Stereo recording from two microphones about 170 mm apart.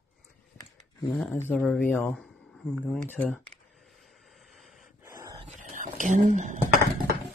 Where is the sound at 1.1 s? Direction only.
15° left (ahead or behind).